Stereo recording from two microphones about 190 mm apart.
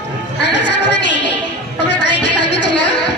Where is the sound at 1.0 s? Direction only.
65° left (ahead or behind).